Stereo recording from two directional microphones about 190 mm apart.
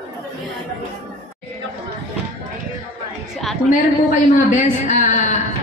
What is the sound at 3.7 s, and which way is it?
A woman's voice, 40° left (ahead or behind).